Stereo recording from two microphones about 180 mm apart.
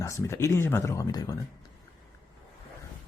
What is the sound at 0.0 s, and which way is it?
Speech, 15° left (ahead or behind).